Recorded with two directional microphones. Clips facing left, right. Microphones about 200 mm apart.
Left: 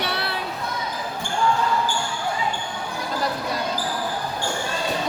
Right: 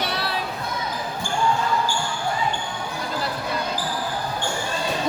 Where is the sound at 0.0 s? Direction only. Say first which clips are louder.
Even; 60° left (ahead or behind).